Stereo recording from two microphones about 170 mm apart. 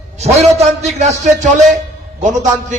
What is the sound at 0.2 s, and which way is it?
A man's voice, 40° right (ahead or behind).